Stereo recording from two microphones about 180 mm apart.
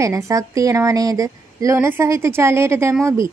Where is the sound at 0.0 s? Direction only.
15° right (ahead or behind).